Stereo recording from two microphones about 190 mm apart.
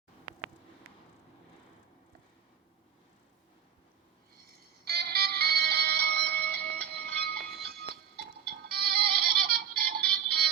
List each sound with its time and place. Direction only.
4.4 s music: 55° right (ahead or behind)